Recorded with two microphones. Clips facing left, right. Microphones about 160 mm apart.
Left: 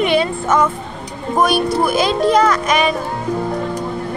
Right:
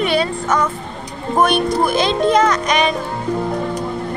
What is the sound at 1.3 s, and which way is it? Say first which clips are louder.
Speech: even; 5° left (ahead or behind).